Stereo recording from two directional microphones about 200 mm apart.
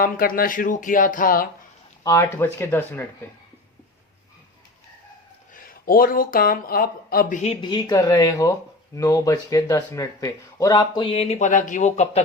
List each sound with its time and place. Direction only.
0.0 s speech: 45° left (ahead or behind)
2.0 s speech: 15° left (ahead or behind)
5.5 s speech: 45° left (ahead or behind)